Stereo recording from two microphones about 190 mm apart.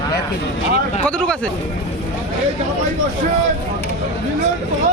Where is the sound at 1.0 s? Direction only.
5° left (ahead or behind).